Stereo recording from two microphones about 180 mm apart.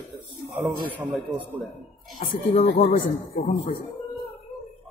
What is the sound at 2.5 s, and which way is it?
Speech, 35° left (ahead or behind).